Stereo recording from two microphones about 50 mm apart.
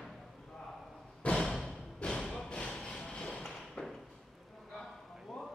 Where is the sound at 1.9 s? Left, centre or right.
Centre.